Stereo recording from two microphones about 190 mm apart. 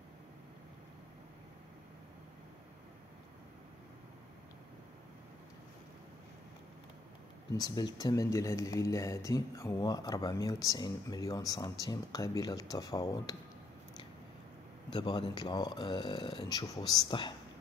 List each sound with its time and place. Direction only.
7.5 s speech: 20° left (ahead or behind)
14.9 s speech: 25° left (ahead or behind)